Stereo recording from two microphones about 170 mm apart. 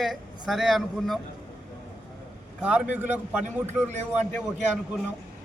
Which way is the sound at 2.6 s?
5° right (ahead or behind).